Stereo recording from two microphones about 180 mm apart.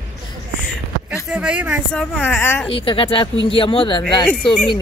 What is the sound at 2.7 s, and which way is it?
Speech, 30° left (ahead or behind).